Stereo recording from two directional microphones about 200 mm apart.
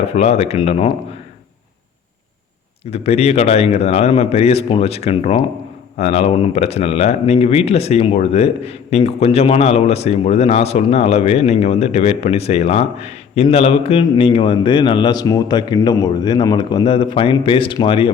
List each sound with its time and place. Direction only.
0.1 s speech: 30° left (ahead or behind)
2.9 s speech: 30° left (ahead or behind)